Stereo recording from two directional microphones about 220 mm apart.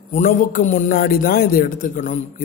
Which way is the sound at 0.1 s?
35° left (ahead or behind).